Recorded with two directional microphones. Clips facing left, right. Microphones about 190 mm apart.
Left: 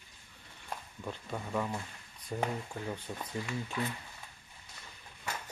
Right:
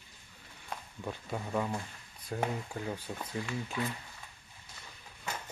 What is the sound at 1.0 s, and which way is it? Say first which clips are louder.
Speech: right 1 dB; 10° right (ahead or behind).